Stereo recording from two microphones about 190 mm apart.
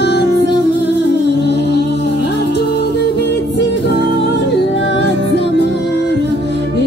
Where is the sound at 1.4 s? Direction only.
60° left (ahead or behind).